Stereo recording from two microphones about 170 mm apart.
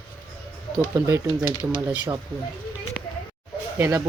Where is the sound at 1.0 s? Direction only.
15° right (ahead or behind).